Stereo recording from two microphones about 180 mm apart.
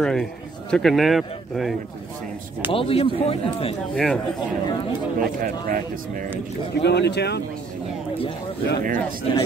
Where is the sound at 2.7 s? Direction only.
30° left (ahead or behind).